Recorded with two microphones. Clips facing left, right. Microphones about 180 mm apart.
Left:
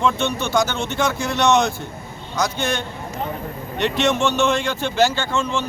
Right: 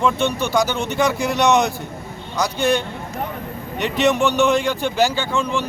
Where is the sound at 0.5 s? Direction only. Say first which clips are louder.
Right 1 dB; 10° right (ahead or behind).